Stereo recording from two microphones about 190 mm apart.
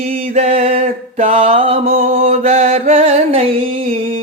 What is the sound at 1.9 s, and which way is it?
Music, 45° right (ahead or behind).